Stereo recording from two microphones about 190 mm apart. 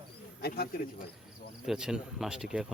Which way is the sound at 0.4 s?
55° left (ahead or behind).